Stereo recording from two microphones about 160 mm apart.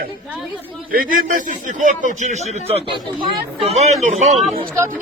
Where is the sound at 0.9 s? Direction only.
60° right (ahead or behind); by 4.3 s 45° right (ahead or behind).